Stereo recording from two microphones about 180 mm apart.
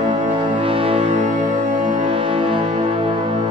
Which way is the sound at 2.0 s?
30° right (ahead or behind).